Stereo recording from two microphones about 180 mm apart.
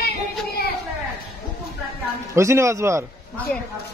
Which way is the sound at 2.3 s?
15° right (ahead or behind).